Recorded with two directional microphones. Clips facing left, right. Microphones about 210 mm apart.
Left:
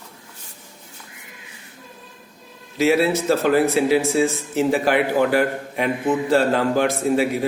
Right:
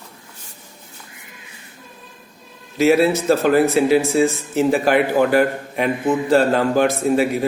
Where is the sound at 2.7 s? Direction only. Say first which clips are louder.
Right 3 dB; 45° right (ahead or behind).